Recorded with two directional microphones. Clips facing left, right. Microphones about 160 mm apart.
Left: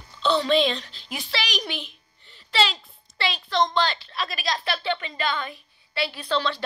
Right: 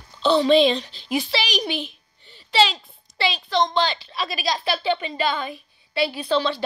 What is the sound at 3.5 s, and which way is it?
A woman's voice, centre (ahead or behind).